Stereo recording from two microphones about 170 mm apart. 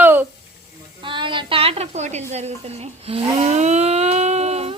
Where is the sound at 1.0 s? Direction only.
30° right (ahead or behind).